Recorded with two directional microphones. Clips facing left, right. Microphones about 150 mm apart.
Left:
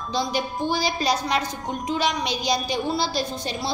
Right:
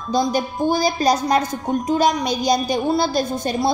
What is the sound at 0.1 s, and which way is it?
A woman's voice, 45° right (ahead or behind).